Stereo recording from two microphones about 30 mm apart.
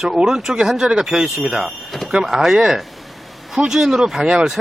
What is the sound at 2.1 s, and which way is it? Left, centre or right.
Speech, centre.